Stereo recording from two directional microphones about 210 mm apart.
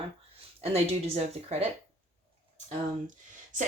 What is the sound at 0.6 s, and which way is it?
Speech, 30° right (ahead or behind).